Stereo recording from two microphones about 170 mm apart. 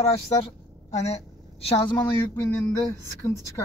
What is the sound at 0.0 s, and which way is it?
A woman's voice, 40° left (ahead or behind).